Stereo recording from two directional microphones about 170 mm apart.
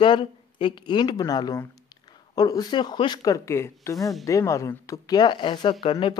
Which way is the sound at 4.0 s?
Centre (ahead or behind).